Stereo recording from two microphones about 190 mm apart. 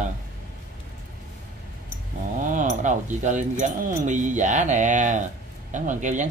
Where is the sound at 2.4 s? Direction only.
40° right (ahead or behind).